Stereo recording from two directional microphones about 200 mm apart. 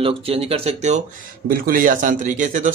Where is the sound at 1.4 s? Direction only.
45° right (ahead or behind).